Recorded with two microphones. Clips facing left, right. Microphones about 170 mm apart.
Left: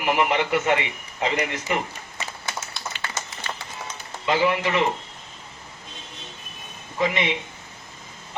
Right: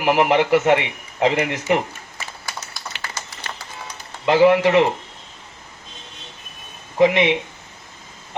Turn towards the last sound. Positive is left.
turn(degrees=-60)  # may be behind; listen again after turning